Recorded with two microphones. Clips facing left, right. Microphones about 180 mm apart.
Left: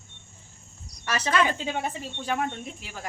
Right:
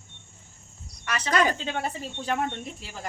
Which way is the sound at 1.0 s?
30° left (ahead or behind).